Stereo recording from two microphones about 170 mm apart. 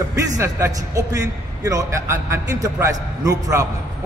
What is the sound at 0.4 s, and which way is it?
A man's voice, 15° right (ahead or behind).